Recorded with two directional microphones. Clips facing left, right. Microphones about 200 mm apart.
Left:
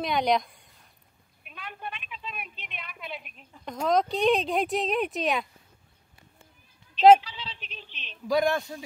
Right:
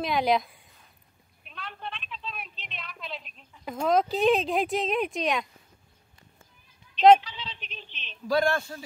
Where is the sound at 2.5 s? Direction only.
55° left (ahead or behind).